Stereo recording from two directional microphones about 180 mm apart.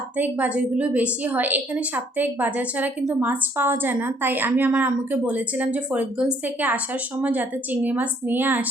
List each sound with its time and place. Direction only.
0.2 s a woman's voice: 10° right (ahead or behind)